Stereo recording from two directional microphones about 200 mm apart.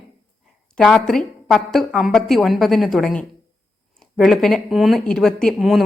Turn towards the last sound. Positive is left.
turn(degrees=0)  # may be behind; listen again after turning